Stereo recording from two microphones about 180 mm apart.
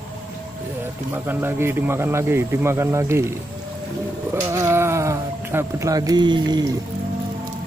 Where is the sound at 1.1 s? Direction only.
10° right (ahead or behind).